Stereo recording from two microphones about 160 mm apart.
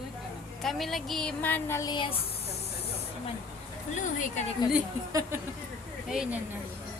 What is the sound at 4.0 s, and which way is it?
Speech, 55° left (ahead or behind).